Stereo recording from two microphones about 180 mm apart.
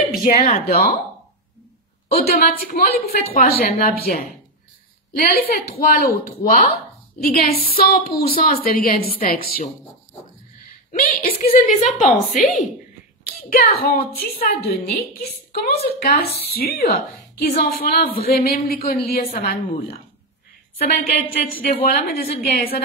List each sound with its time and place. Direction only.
0.2 s a woman's voice: 50° left (ahead or behind)
2.1 s a woman's voice: 55° left (ahead or behind)
10.9 s a woman's voice: 45° left (ahead or behind)
13.2 s a sound: 55° left (ahead or behind)
13.8 s a woman's voice: 55° left (ahead or behind)
20.7 s a woman's voice: 55° left (ahead or behind)